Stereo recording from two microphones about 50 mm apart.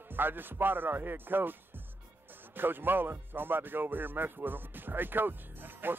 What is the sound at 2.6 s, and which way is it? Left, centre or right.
Speech, right.